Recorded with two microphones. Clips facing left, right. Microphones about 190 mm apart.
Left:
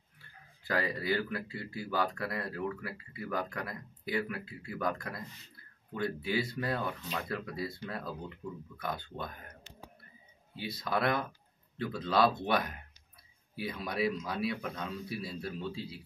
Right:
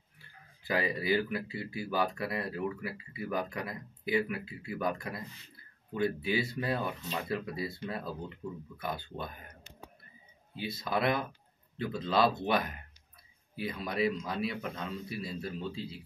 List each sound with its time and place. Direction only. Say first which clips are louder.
0.7 s speech: right 2 dB; 15° right (ahead or behind)
10.8 s speech: right 1 dB; centre (ahead or behind)